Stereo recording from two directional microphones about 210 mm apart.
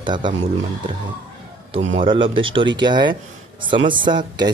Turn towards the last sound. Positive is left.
turn(degrees=-20)  # may be behind; listen again after turning